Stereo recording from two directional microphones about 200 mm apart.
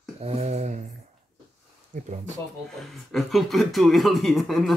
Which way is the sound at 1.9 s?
40° right (ahead or behind).